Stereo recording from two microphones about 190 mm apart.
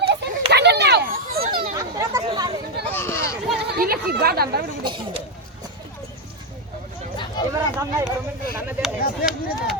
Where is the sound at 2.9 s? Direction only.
15° left (ahead or behind).